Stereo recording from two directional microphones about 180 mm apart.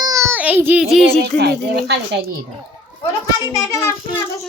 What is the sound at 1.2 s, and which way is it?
Speech, 65° right (ahead or behind).